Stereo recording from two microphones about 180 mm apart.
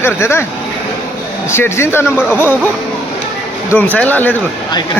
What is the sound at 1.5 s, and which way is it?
Speech, 15° left (ahead or behind).